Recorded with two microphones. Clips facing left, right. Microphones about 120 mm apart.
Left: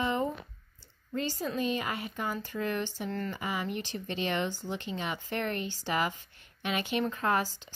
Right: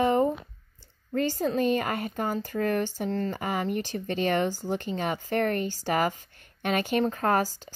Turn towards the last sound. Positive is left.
turn(degrees=-40)  # may be behind; listen again after turning